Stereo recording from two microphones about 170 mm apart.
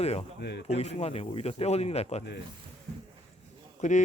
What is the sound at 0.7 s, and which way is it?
Speech, 40° left (ahead or behind).